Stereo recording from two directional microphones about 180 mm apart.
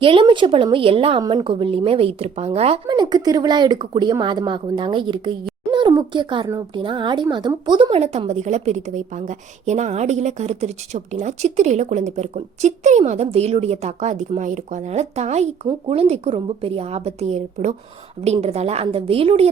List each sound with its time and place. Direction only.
0.0 s speech: 30° right (ahead or behind)
2.8 s speech: 25° right (ahead or behind)